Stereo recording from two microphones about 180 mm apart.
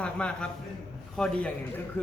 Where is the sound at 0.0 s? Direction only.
5° left (ahead or behind).